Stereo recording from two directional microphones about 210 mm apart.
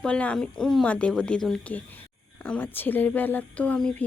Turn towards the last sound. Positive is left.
turn(degrees=5)  # may be behind; listen again after turning